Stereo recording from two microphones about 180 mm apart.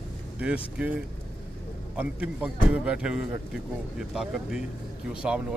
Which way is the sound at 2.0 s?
5° right (ahead or behind).